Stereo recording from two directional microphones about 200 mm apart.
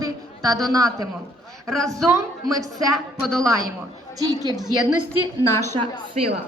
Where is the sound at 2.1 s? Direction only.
15° right (ahead or behind).